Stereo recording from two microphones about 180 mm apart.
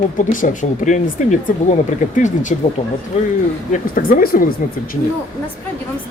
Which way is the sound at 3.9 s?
50° left (ahead or behind).